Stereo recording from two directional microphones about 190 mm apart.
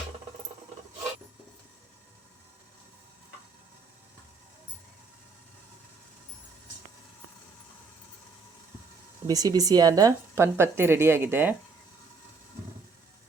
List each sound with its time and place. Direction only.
9.2 s speech: 20° right (ahead or behind)